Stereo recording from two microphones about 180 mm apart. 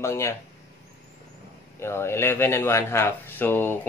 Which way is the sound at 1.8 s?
15° left (ahead or behind).